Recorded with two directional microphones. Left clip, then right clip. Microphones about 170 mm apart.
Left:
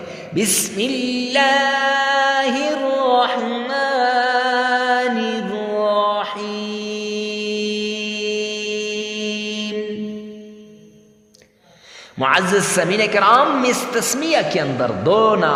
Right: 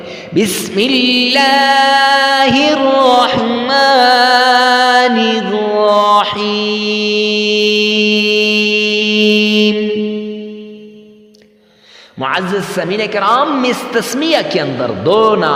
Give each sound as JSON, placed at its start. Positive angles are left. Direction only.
{"t": 0.4, "sound": "a sound", "side_deg": -30}
{"t": 0.8, "sound": "music", "side_deg": -40}
{"t": 12.2, "sound": "a man's voice", "side_deg": -5}